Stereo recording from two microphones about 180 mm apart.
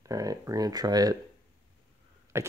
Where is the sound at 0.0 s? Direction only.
20° right (ahead or behind).